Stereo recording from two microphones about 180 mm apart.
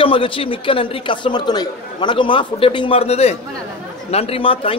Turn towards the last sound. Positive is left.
turn(degrees=30)  # may be behind; listen again after turning